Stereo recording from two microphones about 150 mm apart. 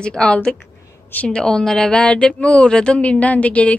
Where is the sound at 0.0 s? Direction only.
5° left (ahead or behind).